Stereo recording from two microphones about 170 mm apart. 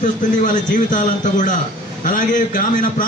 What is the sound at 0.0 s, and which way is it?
A man's voice, 50° left (ahead or behind).